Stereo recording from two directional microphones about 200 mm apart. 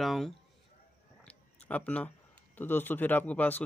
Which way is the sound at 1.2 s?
5° left (ahead or behind).